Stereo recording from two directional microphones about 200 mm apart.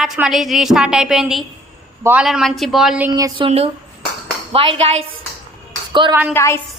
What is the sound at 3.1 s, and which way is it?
Speech, 20° right (ahead or behind).